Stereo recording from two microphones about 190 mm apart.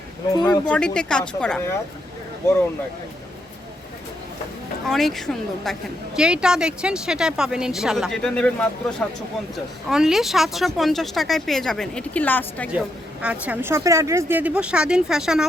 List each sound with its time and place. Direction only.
0.3 s speech: 20° left (ahead or behind)
0.7 s a woman's voice: 5° left (ahead or behind)
4.9 s a woman's voice: centre (ahead or behind)
13.2 s speech: 5° right (ahead or behind)